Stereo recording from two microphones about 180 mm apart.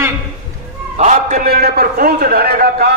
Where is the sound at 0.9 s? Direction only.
40° right (ahead or behind).